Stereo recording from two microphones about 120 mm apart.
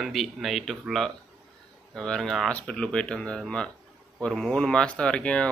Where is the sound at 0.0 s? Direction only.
Centre (ahead or behind).